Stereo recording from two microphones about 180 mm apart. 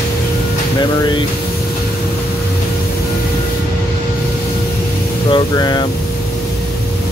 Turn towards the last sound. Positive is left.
turn(degrees=25)  # may be behind; listen again after turning